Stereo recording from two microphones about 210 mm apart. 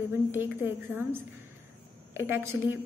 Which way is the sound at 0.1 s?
10° right (ahead or behind).